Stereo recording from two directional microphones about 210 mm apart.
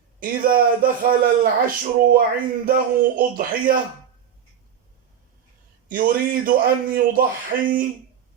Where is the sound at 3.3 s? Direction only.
45° right (ahead or behind).